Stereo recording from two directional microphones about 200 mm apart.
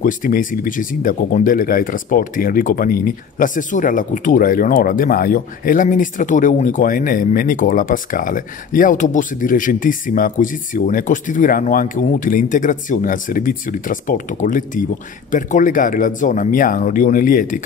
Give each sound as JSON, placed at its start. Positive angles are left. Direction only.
{"t": 0.0, "sound": "speech", "side_deg": 40}